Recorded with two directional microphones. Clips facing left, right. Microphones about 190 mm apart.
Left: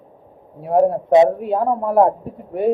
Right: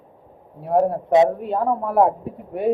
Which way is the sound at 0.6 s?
5° left (ahead or behind).